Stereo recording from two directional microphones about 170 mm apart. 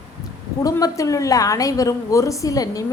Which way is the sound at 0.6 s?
20° left (ahead or behind).